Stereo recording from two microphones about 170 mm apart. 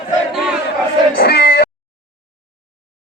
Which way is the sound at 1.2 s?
70° left (ahead or behind).